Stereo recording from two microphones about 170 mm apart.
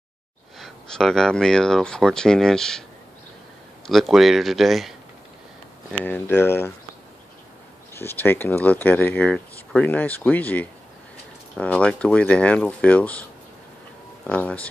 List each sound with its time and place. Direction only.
0.6 s speech: 5° left (ahead or behind)
3.8 s speech: centre (ahead or behind)
5.9 s speech: 10° left (ahead or behind)
7.9 s speech: 15° left (ahead or behind)